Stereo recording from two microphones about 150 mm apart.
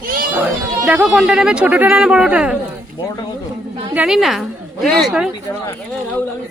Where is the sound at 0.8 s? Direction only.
10° right (ahead or behind).